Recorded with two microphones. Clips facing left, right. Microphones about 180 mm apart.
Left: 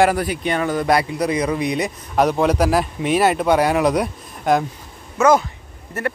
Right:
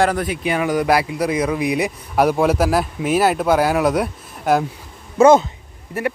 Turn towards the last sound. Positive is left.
turn(degrees=-10)  # may be behind; listen again after turning